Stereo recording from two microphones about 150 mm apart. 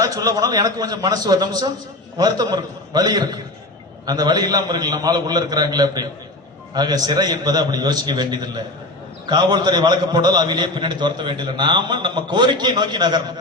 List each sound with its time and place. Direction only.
0.0 s a man's voice: 25° right (ahead or behind)